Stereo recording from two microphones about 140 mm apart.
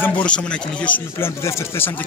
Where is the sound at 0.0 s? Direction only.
10° left (ahead or behind).